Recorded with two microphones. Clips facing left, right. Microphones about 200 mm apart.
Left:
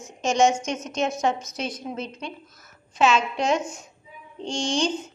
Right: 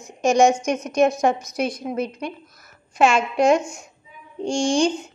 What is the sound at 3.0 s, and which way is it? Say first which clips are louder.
Speech: right 3 dB; 50° right (ahead or behind).